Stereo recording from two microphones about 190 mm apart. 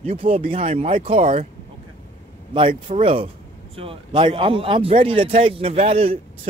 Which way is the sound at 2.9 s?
30° right (ahead or behind).